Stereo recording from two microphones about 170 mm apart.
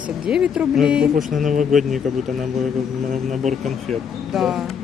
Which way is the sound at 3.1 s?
45° right (ahead or behind).